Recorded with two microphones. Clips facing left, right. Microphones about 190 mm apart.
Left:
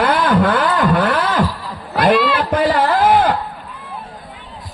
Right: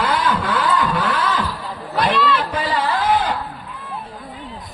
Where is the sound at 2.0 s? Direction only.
55° left (ahead or behind).